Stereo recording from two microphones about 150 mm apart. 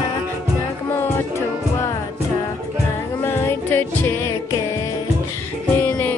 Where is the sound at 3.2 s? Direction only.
15° left (ahead or behind).